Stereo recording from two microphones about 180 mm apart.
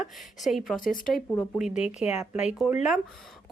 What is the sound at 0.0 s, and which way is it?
A woman's voice, centre (ahead or behind).